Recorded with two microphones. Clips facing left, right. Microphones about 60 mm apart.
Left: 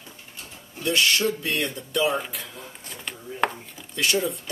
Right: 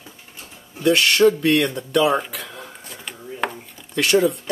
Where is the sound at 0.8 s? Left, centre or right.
Right.